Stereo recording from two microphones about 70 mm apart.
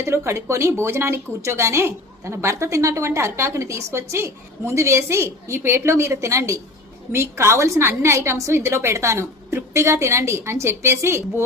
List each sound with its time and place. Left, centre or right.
0.0 s a woman's voice: right